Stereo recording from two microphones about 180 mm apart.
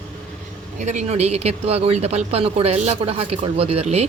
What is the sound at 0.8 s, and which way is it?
Speech, 40° right (ahead or behind).